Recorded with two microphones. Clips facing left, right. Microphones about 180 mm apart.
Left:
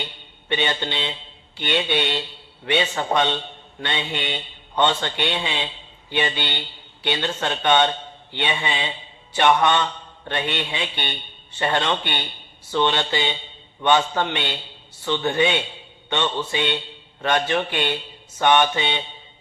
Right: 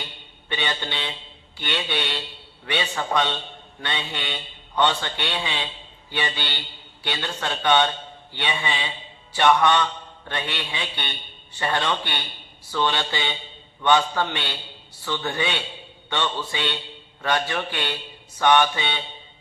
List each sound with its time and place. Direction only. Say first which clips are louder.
0.4 s a man's voice: left 4 dB; 25° left (ahead or behind)